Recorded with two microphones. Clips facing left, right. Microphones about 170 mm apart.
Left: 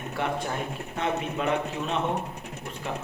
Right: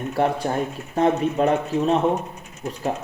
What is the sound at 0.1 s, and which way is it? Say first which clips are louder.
Speech: right 7 dB; 35° right (ahead or behind).